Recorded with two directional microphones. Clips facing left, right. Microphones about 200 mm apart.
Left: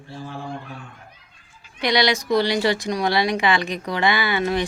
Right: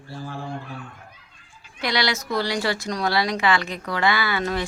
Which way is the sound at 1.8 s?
15° left (ahead or behind).